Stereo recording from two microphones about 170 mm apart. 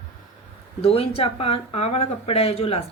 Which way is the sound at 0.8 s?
35° left (ahead or behind).